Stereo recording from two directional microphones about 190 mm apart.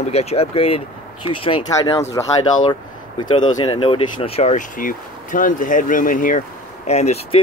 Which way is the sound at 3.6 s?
25° left (ahead or behind).